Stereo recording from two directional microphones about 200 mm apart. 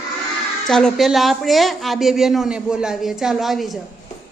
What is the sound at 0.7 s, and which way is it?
Speech, centre (ahead or behind).